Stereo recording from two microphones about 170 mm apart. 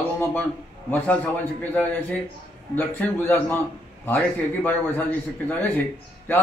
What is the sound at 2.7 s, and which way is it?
A man's voice, 10° left (ahead or behind).